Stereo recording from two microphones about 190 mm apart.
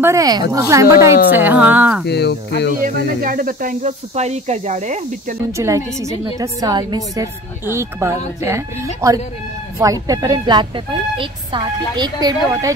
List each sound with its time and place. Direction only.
0.0 s a woman's voice: 15° right (ahead or behind)
2.0 s speech: 60° left (ahead or behind)
2.7 s speech: 45° right (ahead or behind)
5.6 s a woman's voice: 15° right (ahead or behind)